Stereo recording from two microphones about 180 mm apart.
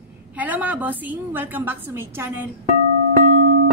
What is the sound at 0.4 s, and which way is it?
Speech, 10° right (ahead or behind).